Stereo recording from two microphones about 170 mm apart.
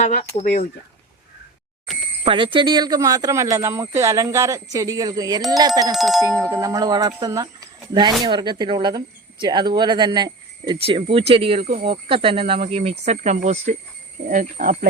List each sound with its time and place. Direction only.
0.0 s speech: 45° left (ahead or behind)
2.2 s speech: 30° right (ahead or behind)
5.9 s speech: centre (ahead or behind)
6.5 s speech: 20° right (ahead or behind); by 14.8 s 55° right (ahead or behind)